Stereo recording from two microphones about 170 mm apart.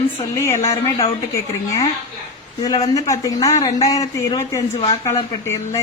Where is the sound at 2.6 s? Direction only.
25° left (ahead or behind).